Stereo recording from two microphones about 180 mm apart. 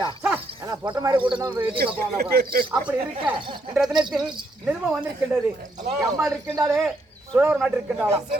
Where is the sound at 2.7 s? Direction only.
5° right (ahead or behind).